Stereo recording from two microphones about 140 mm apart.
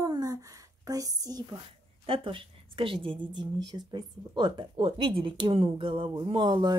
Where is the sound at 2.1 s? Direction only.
40° right (ahead or behind).